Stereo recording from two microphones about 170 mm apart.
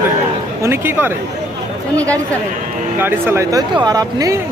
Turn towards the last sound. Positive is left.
turn(degrees=-20)  # may be behind; listen again after turning